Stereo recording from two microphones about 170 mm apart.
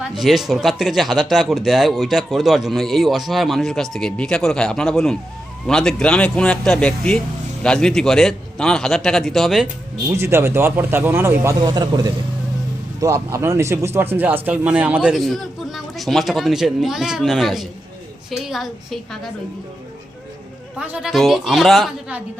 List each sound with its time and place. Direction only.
0.2 s speech: centre (ahead or behind)
10.2 s a man's voice: 15° right (ahead or behind)
20.7 s speech: 5° right (ahead or behind)